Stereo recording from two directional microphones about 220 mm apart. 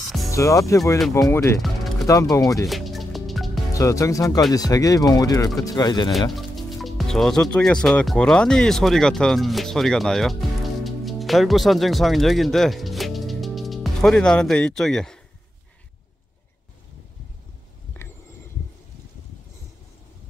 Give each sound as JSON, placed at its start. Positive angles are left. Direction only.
{"t": 0.3, "sound": "speech", "side_deg": 15}
{"t": 2.6, "sound": "music", "side_deg": 0}
{"t": 3.7, "sound": "speech", "side_deg": 15}
{"t": 6.3, "sound": "speech", "side_deg": 0}